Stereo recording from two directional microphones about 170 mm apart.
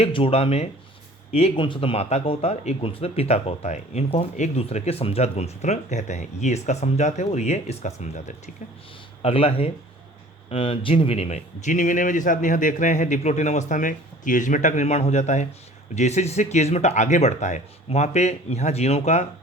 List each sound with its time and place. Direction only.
0.0 s speech: 35° left (ahead or behind)
9.2 s speech: 35° left (ahead or behind)